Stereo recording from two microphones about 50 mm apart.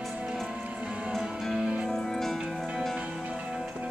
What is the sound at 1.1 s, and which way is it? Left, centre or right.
Music, centre.